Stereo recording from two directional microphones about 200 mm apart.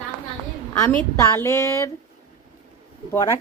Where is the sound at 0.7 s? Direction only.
10° left (ahead or behind).